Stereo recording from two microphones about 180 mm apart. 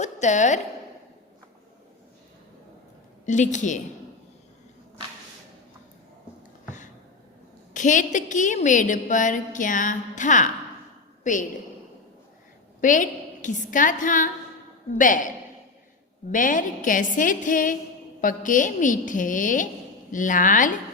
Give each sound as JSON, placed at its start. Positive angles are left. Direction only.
{"t": 0.0, "sound": "a woman's voice", "side_deg": 40}
{"t": 3.2, "sound": "a woman's voice", "side_deg": 45}
{"t": 7.7, "sound": "a woman's voice", "side_deg": 45}
{"t": 12.8, "sound": "a woman's voice", "side_deg": 45}
{"t": 16.3, "sound": "a woman's voice", "side_deg": 45}